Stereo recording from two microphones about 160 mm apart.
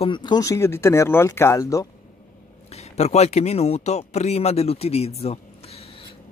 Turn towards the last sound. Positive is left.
turn(degrees=40)  # may be behind; listen again after turning